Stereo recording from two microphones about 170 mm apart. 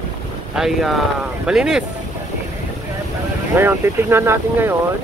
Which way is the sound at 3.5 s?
15° right (ahead or behind).